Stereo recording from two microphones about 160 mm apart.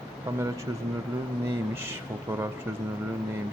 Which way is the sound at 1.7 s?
15° right (ahead or behind).